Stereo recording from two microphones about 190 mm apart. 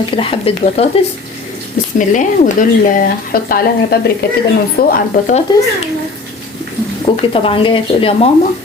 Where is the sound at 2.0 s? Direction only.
40° left (ahead or behind).